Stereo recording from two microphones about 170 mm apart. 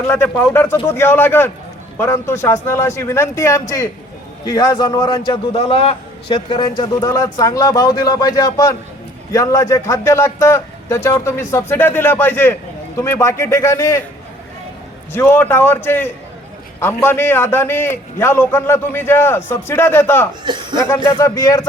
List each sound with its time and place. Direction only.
0.1 s a man's voice: 10° left (ahead or behind)
15.1 s a man's voice: 10° left (ahead or behind)
20.4 s speech: 25° right (ahead or behind)
20.7 s a man's voice: 15° left (ahead or behind)